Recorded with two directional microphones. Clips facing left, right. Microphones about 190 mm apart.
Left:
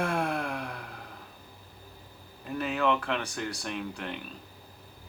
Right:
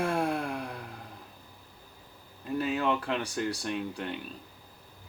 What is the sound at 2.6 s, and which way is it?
Speech, 35° right (ahead or behind).